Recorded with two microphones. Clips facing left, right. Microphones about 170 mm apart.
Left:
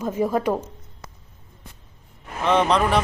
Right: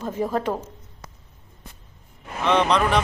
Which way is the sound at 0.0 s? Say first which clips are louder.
Left 3 dB; 10° left (ahead or behind).